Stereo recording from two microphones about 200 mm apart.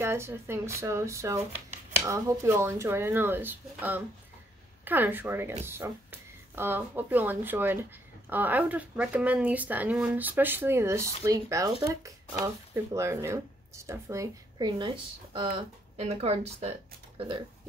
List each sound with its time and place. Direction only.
0.0 s speech: 10° right (ahead or behind); by 16.7 s 30° right (ahead or behind)